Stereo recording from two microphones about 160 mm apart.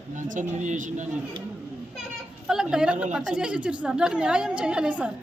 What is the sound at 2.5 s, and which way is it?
A woman's voice, 5° right (ahead or behind).